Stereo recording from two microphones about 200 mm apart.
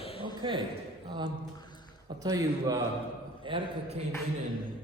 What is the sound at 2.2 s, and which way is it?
A man's voice, 20° right (ahead or behind).